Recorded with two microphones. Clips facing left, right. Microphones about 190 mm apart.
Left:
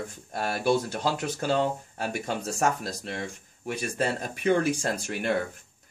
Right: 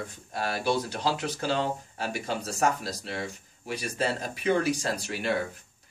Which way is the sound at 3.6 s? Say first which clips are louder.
Left 1 dB; 50° left (ahead or behind).